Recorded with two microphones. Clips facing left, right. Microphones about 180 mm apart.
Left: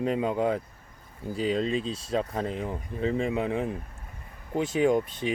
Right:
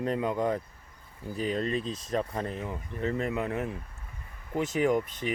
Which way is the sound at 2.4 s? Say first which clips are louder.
Left 3 dB; 15° left (ahead or behind).